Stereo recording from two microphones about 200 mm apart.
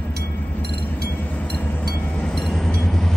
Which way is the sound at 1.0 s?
10° left (ahead or behind).